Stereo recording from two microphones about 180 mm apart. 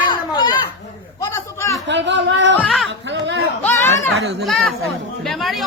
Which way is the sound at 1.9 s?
80° right.